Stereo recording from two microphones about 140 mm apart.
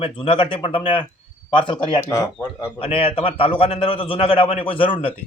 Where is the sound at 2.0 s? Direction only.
20° left (ahead or behind).